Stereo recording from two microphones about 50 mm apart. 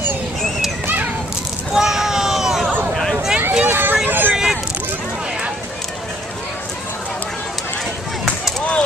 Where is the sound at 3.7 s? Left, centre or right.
Right.